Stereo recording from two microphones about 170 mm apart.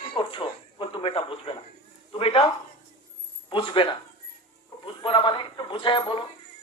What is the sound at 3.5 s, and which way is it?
Speech, 30° left (ahead or behind).